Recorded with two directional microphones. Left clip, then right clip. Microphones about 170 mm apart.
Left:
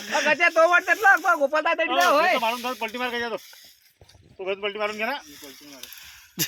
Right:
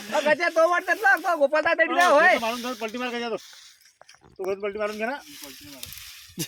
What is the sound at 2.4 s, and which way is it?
Speech, 60° right (ahead or behind).